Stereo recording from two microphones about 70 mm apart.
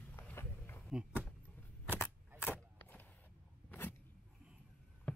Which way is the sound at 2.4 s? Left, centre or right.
Left.